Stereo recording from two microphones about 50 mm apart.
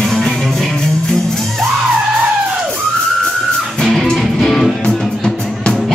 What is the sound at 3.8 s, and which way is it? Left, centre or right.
Music, centre.